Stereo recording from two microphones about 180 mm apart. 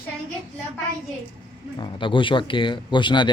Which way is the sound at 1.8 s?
25° left (ahead or behind).